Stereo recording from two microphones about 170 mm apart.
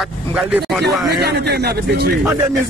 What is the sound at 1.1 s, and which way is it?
Speech, 70° right (ahead or behind).